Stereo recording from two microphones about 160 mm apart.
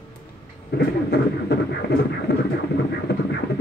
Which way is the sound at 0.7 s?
90° left.